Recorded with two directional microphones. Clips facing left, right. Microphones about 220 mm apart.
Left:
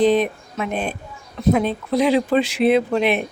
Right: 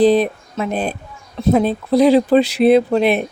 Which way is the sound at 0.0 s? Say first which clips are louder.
Right 3 dB; 35° right (ahead or behind).